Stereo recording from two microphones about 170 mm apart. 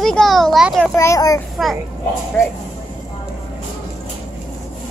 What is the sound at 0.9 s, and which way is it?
Speech, 20° left (ahead or behind).